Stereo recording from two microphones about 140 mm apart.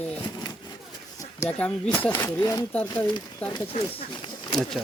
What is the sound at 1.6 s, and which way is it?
Speech, 10° left (ahead or behind).